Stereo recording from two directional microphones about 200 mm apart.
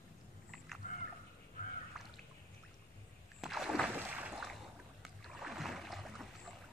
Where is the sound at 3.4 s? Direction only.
Centre (ahead or behind).